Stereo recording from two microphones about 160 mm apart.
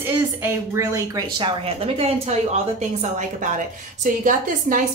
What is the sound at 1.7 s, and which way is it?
A woman's voice, 40° right (ahead or behind).